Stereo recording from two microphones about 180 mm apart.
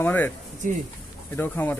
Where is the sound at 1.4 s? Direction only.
10° left (ahead or behind).